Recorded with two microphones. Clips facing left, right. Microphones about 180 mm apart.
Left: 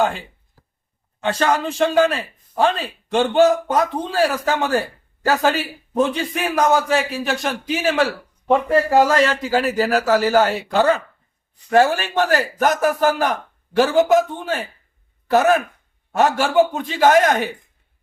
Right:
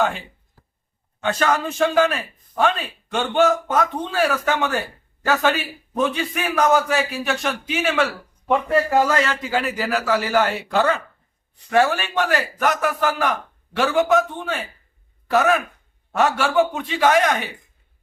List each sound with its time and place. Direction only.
1.2 s a man's voice: 30° left (ahead or behind)